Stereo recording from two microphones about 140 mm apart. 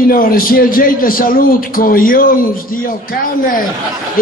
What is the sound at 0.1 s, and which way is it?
A man's voice, 90° left.